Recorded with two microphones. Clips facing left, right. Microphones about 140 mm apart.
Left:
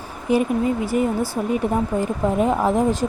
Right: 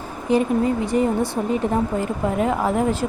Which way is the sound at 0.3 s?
10° left (ahead or behind).